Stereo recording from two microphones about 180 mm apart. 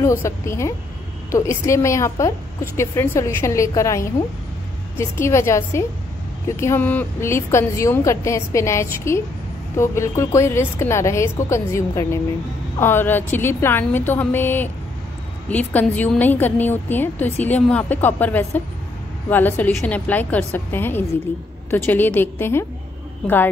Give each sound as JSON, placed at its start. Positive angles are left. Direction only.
{"t": 0.0, "sound": "a woman's voice", "side_deg": 15}